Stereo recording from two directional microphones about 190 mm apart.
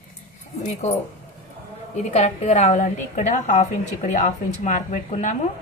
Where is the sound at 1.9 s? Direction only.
35° left (ahead or behind).